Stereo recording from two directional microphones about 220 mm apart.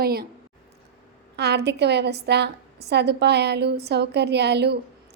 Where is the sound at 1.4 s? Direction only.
50° right (ahead or behind).